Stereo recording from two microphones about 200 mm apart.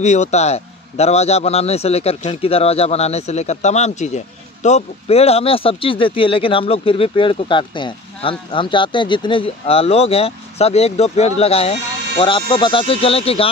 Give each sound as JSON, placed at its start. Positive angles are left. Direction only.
{"t": 0.0, "sound": "a man's voice", "side_deg": 35}